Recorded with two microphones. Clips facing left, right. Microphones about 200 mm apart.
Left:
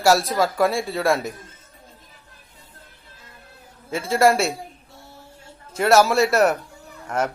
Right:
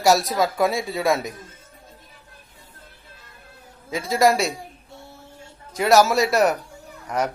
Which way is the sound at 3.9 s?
Centre (ahead or behind).